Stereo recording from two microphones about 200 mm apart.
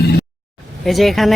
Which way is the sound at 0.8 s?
Centre (ahead or behind).